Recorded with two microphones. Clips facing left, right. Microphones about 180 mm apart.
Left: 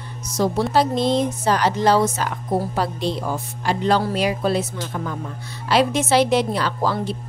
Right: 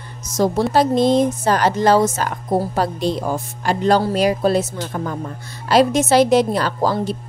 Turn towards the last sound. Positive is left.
turn(degrees=-40)  # may be behind; listen again after turning